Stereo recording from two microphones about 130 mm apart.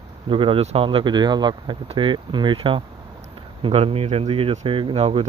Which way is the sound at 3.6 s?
50° right (ahead or behind).